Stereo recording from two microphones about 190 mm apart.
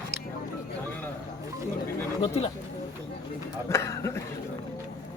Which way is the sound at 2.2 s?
30° left (ahead or behind).